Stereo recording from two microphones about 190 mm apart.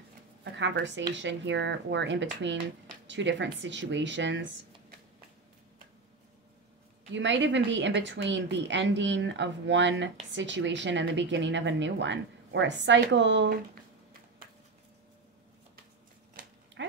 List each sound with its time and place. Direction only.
0.4 s speech: 70° right (ahead or behind)
7.1 s speech: 75° right (ahead or behind)